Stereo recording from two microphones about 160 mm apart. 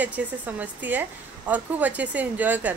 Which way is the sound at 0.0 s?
10° right (ahead or behind).